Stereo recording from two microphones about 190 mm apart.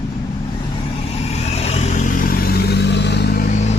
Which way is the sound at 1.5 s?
35° left (ahead or behind).